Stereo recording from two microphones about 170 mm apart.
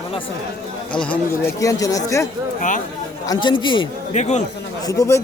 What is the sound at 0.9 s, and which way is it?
Speech, 10° left (ahead or behind).